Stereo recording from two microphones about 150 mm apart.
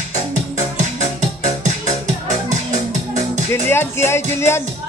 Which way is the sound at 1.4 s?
50° right (ahead or behind).